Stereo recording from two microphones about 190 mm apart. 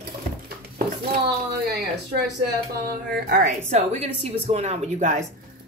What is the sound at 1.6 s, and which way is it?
Speech, 60° right (ahead or behind).